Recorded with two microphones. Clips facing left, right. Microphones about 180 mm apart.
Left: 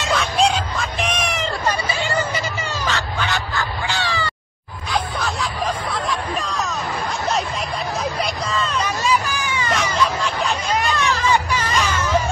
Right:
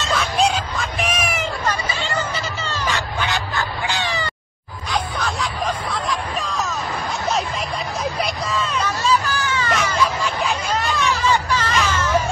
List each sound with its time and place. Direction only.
0.1 s music: centre (ahead or behind)
2.8 s a sound: 15° right (ahead or behind)
4.9 s hubbub: centre (ahead or behind)
8.0 s hubbub: centre (ahead or behind)
8.8 s hubbub: 15° left (ahead or behind)
9.8 s hubbub: centre (ahead or behind)
10.7 s hubbub: 15° left (ahead or behind)